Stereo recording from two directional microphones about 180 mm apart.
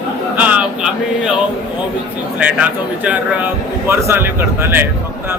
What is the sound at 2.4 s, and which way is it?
Speech, 5° right (ahead or behind).